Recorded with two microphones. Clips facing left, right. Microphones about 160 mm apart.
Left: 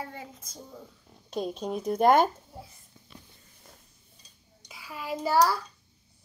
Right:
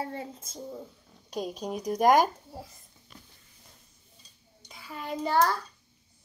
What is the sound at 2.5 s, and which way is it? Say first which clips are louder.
Speech: right 3 dB; 40° right (ahead or behind).